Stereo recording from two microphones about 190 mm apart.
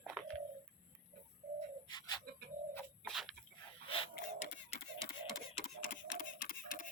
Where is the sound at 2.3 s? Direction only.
50° right (ahead or behind).